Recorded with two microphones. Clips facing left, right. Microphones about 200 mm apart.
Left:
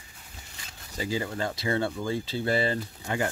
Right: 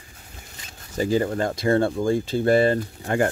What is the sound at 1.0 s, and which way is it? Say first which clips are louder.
Speech: right 8 dB; 50° right (ahead or behind).